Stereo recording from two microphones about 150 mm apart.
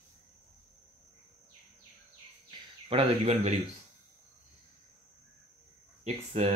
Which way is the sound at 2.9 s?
40° right (ahead or behind).